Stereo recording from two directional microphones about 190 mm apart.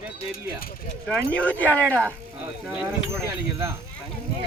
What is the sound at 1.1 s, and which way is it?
Speech, 10° left (ahead or behind).